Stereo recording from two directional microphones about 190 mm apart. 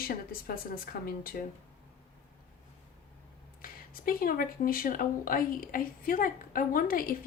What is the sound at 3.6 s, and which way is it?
Speech, 50° left (ahead or behind).